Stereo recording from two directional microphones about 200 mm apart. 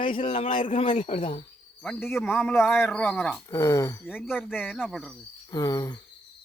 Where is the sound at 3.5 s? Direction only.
15° left (ahead or behind).